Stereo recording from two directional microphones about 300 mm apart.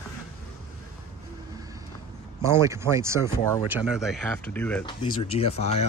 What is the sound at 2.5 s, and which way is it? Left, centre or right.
Speech, centre.